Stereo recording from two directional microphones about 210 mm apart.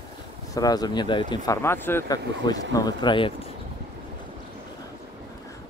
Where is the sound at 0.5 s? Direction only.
20° left (ahead or behind).